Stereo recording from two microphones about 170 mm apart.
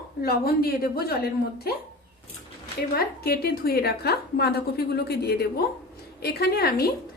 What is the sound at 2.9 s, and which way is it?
A woman's voice, 65° left (ahead or behind).